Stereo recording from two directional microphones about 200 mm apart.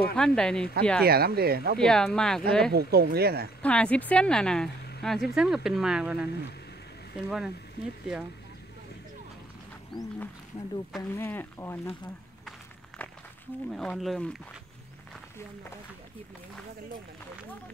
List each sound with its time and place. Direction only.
0.1 s speech: 5° left (ahead or behind)
1.0 s speech: 50° right (ahead or behind)
1.8 s speech: 5° left (ahead or behind)
2.7 s speech: 50° right (ahead or behind)
3.6 s speech: 5° left (ahead or behind)
9.9 s speech: 10° left (ahead or behind)
10.5 s speech: 20° left (ahead or behind)
13.7 s speech: centre (ahead or behind)